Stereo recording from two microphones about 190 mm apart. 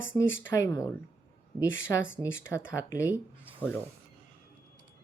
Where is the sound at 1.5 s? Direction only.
85° left.